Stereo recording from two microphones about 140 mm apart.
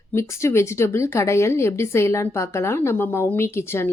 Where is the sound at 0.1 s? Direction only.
20° left (ahead or behind).